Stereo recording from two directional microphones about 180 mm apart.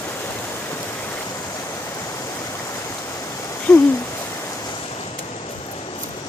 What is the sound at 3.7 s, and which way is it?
Hoot, 5° left (ahead or behind).